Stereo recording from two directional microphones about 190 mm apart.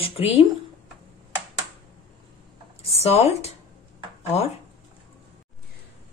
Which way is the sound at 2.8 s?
35° left (ahead or behind).